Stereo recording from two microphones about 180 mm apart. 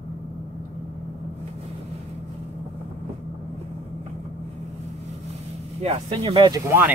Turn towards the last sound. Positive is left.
turn(degrees=-15)  # may be behind; listen again after turning